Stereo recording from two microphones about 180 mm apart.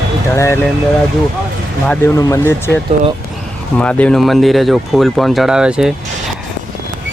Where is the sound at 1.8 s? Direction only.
15° left (ahead or behind); by 5.9 s 5° right (ahead or behind).